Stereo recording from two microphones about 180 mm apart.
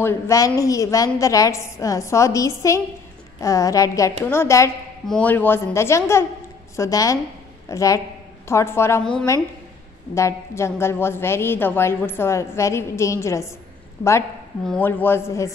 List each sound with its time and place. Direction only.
0.0 s a woman's voice: 15° left (ahead or behind)
14.6 s a woman's voice: 5° left (ahead or behind)